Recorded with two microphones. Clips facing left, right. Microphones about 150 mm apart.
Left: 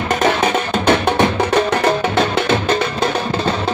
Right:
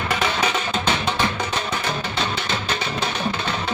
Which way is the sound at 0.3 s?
55° left (ahead or behind).